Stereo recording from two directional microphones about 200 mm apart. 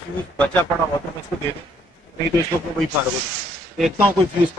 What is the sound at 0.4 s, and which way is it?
Speech, 5° left (ahead or behind).